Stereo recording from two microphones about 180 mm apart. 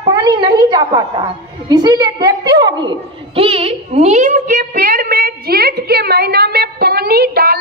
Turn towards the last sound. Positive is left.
turn(degrees=-60)  # may be behind; listen again after turning